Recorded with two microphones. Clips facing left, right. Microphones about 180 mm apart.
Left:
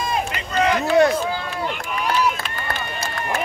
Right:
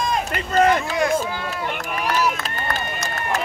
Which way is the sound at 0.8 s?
40° left (ahead or behind).